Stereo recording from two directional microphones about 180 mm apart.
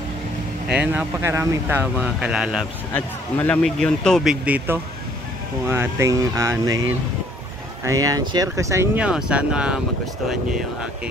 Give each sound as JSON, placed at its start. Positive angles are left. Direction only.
{"t": 0.7, "sound": "speech", "side_deg": -10}
{"t": 2.9, "sound": "speech", "side_deg": 10}